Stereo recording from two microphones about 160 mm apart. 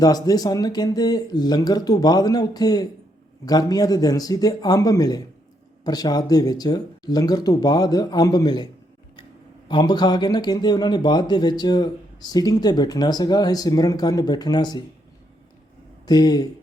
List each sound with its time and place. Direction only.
0.0 s speech: 25° left (ahead or behind)
16.0 s speech: 25° left (ahead or behind)